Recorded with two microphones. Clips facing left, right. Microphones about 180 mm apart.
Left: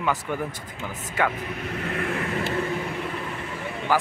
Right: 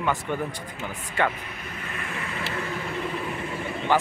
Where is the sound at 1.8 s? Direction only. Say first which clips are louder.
Left 7 dB; 60° left (ahead or behind).